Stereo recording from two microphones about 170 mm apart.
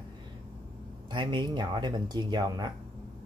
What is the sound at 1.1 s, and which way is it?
Speech, 30° right (ahead or behind).